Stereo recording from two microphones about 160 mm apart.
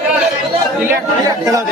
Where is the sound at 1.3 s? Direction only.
20° right (ahead or behind).